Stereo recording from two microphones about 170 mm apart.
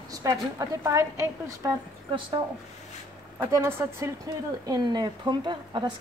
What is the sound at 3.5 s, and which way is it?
A woman's voice, 15° right (ahead or behind).